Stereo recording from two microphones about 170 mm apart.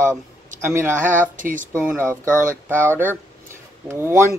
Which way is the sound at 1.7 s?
10° right (ahead or behind).